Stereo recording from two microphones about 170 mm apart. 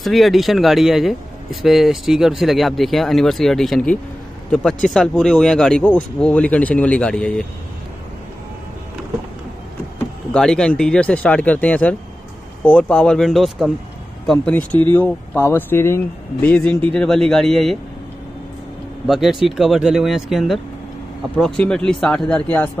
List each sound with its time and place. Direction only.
0.0 s speech: centre (ahead or behind)
10.3 s speech: 5° left (ahead or behind)
19.0 s speech: centre (ahead or behind)